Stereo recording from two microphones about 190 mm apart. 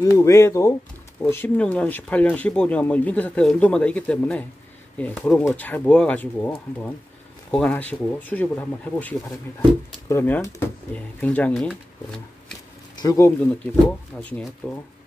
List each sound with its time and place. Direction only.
0.0 s speech: 15° left (ahead or behind)
12.9 s speech: 20° left (ahead or behind)